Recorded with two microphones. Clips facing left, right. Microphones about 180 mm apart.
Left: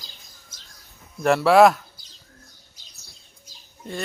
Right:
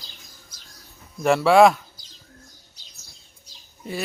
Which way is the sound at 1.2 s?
Centre (ahead or behind).